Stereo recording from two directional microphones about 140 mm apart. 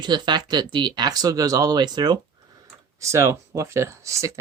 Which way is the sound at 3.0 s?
20° right (ahead or behind).